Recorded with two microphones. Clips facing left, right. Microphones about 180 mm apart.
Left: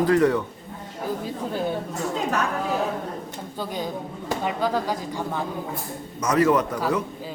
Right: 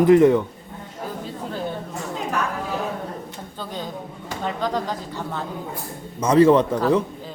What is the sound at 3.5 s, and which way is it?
Speech, 10° left (ahead or behind).